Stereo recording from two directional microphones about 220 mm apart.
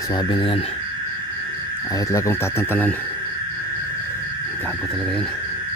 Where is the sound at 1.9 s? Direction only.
15° left (ahead or behind).